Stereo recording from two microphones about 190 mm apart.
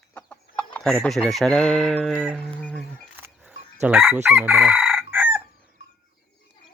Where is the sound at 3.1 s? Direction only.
10° right (ahead or behind).